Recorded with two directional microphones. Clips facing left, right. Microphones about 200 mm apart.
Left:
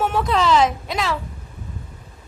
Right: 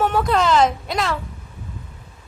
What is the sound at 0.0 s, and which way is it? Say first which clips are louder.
A woman's voice: right 1 dB; centre (ahead or behind).